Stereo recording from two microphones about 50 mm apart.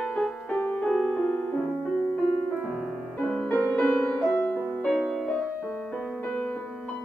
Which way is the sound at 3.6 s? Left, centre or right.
Centre.